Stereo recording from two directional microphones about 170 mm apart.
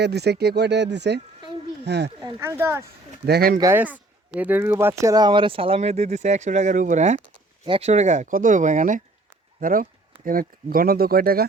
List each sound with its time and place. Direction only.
0.0 s speech: 75° right (ahead or behind)
2.2 s speech: 15° right (ahead or behind)
3.2 s speech: 65° right (ahead or behind)
3.6 s speech: 15° right (ahead or behind); by 7.2 s 45° right (ahead or behind)
7.6 s speech: 35° right (ahead or behind); by 11.4 s 60° right (ahead or behind)